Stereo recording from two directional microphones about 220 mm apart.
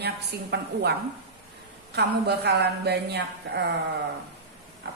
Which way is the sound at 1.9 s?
50° right (ahead or behind).